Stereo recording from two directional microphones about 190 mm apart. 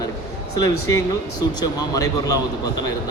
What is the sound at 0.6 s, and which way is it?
Speech, 15° left (ahead or behind).